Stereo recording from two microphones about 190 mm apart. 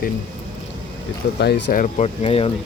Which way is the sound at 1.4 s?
60° left (ahead or behind).